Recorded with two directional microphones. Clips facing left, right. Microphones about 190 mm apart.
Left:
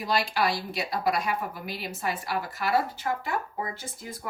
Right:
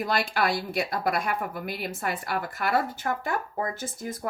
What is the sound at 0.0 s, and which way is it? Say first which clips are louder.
Speech: even; 50° right (ahead or behind).